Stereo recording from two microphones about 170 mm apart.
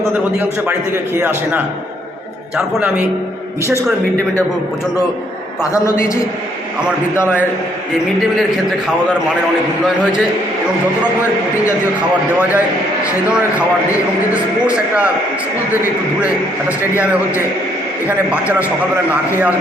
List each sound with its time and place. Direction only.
1.1 s a man's voice: 10° right (ahead or behind)
5.7 s a man's voice: 20° left (ahead or behind)
12.4 s a man's voice: 10° right (ahead or behind)